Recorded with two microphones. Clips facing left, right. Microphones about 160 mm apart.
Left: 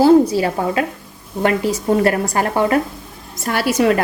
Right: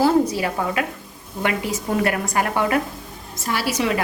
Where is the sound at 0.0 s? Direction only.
30° left (ahead or behind).